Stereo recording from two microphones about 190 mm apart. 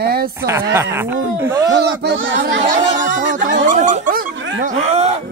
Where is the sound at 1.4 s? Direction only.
15° right (ahead or behind).